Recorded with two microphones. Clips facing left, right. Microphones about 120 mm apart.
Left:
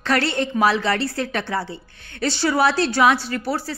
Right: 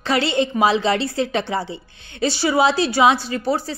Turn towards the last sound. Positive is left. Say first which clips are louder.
# right 3 dB
turn(degrees=-20)  # may be behind; listen again after turning